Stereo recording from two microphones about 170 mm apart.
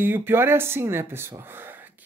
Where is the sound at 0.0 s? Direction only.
10° right (ahead or behind).